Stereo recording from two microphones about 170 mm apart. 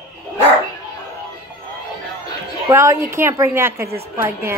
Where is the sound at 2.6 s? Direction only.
15° right (ahead or behind).